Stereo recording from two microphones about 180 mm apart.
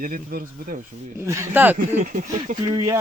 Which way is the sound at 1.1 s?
15° right (ahead or behind).